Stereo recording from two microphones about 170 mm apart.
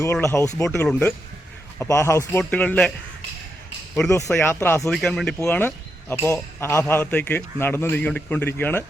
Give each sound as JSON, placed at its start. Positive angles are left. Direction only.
{"t": 0.0, "sound": "speech", "side_deg": 15}
{"t": 4.3, "sound": "speech", "side_deg": 10}
{"t": 4.9, "sound": "speech", "side_deg": 0}